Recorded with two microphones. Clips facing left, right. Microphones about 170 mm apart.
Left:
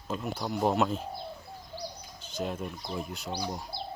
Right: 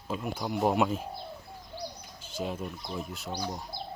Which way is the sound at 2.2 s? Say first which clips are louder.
Even; 5° right (ahead or behind).